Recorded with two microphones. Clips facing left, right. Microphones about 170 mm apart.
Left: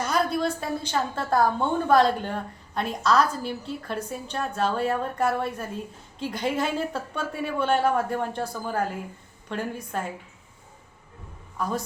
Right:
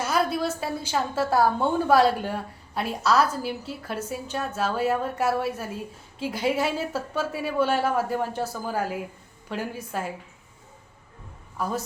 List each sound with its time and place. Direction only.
0.0 s a woman's voice: 5° right (ahead or behind)
11.6 s a woman's voice: 5° right (ahead or behind)